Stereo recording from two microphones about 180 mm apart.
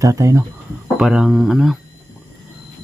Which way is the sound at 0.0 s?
15° right (ahead or behind).